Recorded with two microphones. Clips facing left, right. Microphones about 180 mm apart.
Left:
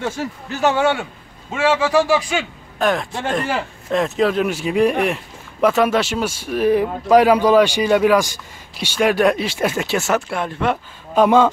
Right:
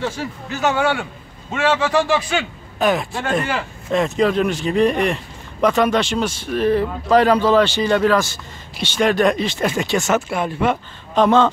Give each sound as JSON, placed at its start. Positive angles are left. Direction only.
{"t": 0.0, "sound": "a man's voice", "side_deg": 40}
{"t": 1.5, "sound": "speech", "side_deg": 10}
{"t": 2.8, "sound": "speech", "side_deg": -5}
{"t": 11.1, "sound": "speech", "side_deg": 10}